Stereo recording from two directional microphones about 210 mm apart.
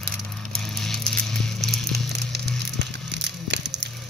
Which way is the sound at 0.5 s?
Centre (ahead or behind).